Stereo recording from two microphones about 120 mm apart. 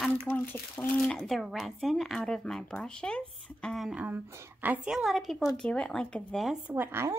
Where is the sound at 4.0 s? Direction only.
20° right (ahead or behind); by 6.6 s centre (ahead or behind).